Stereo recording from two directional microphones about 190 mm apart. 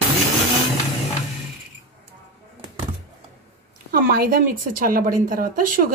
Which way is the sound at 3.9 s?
50° right (ahead or behind).